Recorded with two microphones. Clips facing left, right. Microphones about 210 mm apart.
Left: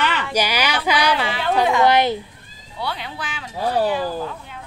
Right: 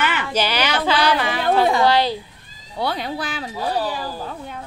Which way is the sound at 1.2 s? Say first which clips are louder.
Right 2 dB; 45° right (ahead or behind).